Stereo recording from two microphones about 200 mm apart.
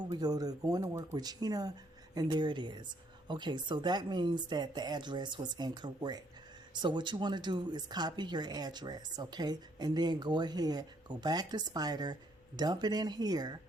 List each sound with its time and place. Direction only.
0.1 s a woman's voice: 20° right (ahead or behind)